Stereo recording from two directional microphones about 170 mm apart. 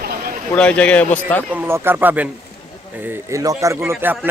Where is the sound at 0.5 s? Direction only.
5° left (ahead or behind).